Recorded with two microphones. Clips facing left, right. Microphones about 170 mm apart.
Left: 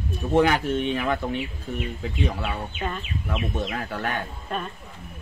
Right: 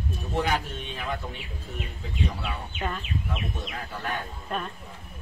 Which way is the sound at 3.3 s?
70° left (ahead or behind).